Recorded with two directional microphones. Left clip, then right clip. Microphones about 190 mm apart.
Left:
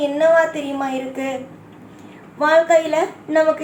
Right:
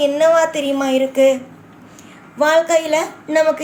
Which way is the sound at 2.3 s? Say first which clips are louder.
Even; 45° right (ahead or behind).